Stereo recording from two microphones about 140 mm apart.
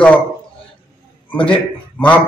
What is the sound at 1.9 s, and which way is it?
Speech, 10° left (ahead or behind).